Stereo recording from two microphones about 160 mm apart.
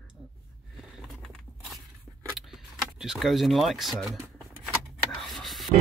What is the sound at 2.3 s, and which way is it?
Keys jangling, 5° right (ahead or behind).